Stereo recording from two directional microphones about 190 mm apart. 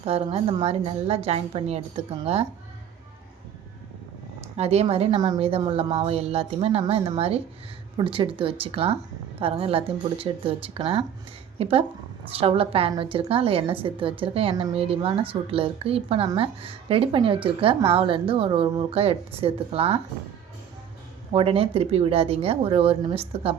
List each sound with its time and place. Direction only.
0.0 s a woman's voice: 30° right (ahead or behind)
4.5 s a woman's voice: 35° right (ahead or behind)
21.3 s a woman's voice: 30° right (ahead or behind)